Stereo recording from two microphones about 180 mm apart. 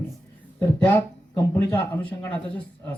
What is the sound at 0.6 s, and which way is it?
Speech, 10° left (ahead or behind).